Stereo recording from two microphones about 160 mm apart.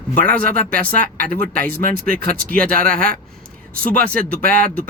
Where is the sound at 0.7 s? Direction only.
65° right (ahead or behind).